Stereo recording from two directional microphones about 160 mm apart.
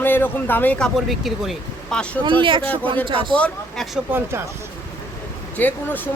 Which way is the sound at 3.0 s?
35° right (ahead or behind).